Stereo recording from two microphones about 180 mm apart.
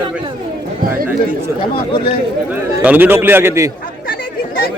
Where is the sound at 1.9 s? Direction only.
30° left (ahead or behind).